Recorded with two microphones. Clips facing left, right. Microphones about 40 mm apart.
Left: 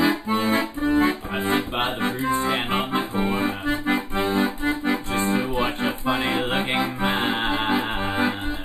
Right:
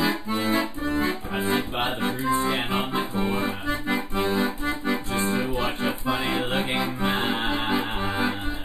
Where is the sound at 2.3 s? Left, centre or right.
Centre.